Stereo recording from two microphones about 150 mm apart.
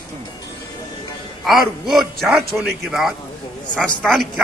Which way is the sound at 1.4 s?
Centre (ahead or behind).